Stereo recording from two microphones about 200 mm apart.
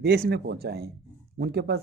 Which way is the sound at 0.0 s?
55° right (ahead or behind).